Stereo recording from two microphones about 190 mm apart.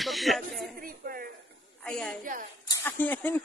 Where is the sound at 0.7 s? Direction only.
50° right (ahead or behind).